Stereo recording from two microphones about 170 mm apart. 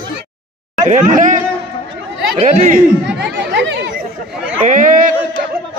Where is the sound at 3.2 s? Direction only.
90° right.